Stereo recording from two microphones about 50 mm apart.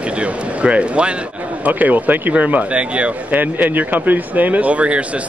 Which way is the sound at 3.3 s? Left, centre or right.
Right.